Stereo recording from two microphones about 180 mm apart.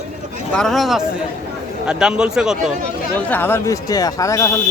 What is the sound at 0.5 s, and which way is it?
Speech, centre (ahead or behind).